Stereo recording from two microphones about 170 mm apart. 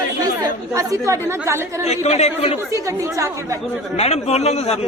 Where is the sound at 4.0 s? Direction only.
40° left (ahead or behind).